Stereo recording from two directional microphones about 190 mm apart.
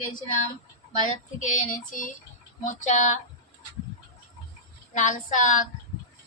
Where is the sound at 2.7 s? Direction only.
40° left (ahead or behind).